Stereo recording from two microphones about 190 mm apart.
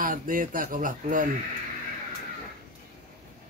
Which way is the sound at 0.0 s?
45° right (ahead or behind).